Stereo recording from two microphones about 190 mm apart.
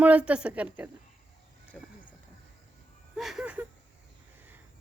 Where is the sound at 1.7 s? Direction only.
5° left (ahead or behind).